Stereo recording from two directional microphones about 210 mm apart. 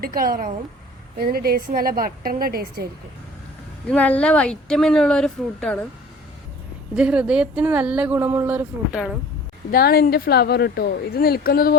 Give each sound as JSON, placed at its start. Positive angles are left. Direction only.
{"t": 0.0, "sound": "a woman's voice", "side_deg": -45}
{"t": 3.8, "sound": "speech", "side_deg": 5}
{"t": 6.9, "sound": "speech", "side_deg": -5}
{"t": 9.7, "sound": "speech", "side_deg": 45}